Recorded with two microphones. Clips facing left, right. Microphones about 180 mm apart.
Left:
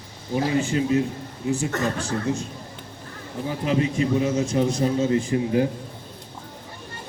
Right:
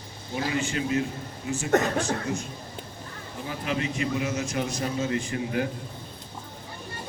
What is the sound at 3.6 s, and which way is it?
A man's voice, 35° left (ahead or behind).